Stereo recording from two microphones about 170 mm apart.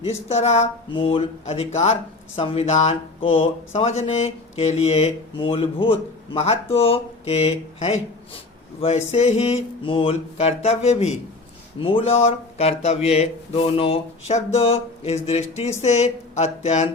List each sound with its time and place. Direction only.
0.0 s speech: 40° left (ahead or behind)